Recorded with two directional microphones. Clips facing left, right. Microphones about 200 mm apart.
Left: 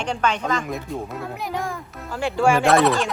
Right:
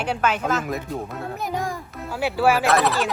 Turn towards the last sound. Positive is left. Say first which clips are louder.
# left 3 dB
turn(degrees=0)  # may be behind; listen again after turning